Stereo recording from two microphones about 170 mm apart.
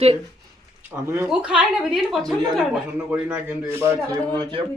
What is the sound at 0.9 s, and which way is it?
A woman's voice, 15° right (ahead or behind).